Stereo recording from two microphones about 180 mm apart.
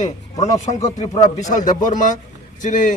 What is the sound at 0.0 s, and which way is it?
A man's voice, 40° left (ahead or behind).